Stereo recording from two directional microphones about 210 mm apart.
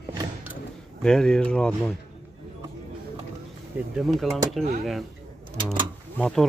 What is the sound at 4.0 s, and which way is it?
Speech, centre (ahead or behind).